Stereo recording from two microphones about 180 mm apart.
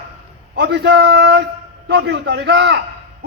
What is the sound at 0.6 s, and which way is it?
A man's voice, 70° right (ahead or behind).